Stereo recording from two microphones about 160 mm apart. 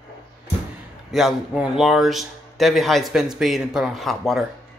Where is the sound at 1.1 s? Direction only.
Centre (ahead or behind).